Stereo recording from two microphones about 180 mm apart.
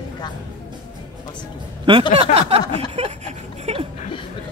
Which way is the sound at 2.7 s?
35° right (ahead or behind).